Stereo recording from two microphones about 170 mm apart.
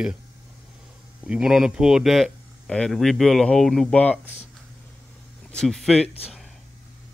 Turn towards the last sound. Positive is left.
turn(degrees=40)  # may be behind; listen again after turning